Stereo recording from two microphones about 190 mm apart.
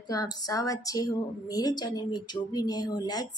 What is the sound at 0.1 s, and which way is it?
A woman's voice, 20° left (ahead or behind).